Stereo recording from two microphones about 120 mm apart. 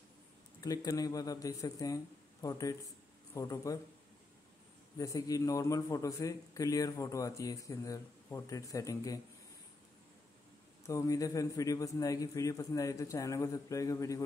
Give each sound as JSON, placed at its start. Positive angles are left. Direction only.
{"t": 0.6, "sound": "a man's voice", "side_deg": 30}
{"t": 4.9, "sound": "a man's voice", "side_deg": 30}
{"t": 10.9, "sound": "a man's voice", "side_deg": 25}